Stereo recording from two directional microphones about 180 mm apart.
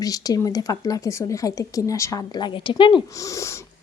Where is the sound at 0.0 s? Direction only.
20° left (ahead or behind).